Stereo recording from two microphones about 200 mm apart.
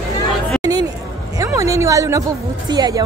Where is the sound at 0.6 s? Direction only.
20° right (ahead or behind).